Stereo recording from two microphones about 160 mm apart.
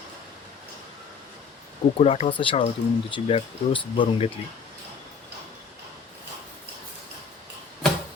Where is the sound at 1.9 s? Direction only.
40° left (ahead or behind).